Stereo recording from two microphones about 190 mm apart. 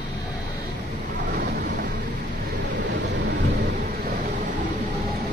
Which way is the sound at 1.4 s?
50° right (ahead or behind).